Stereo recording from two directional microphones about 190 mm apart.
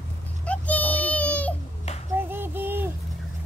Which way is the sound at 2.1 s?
10° right (ahead or behind).